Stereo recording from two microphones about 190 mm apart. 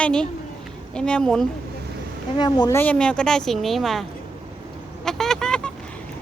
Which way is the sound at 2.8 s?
5° left (ahead or behind).